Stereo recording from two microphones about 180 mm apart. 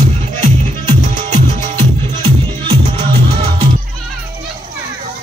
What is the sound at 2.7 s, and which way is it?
Music, 30° right (ahead or behind).